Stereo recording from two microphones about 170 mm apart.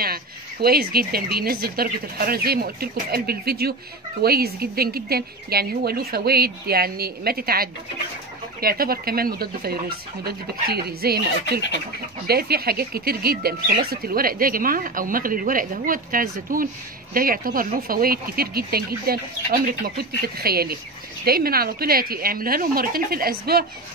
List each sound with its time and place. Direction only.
0.0 s speech: 65° right (ahead or behind)